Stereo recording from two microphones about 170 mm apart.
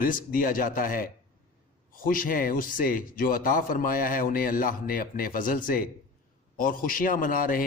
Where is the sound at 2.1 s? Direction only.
55° left (ahead or behind).